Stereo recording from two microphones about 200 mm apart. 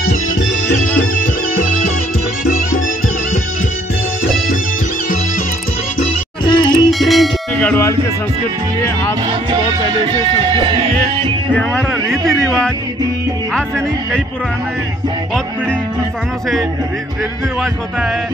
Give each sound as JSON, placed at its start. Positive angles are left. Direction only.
{"t": 6.4, "sound": "music", "side_deg": 20}
{"t": 6.9, "sound": "bell", "side_deg": 0}
{"t": 10.4, "sound": "speech", "side_deg": -25}
{"t": 11.5, "sound": "a man's voice", "side_deg": 5}